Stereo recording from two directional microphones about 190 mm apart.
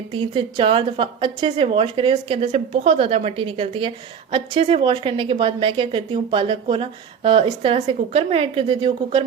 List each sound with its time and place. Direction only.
0.1 s a woman's voice: 25° right (ahead or behind)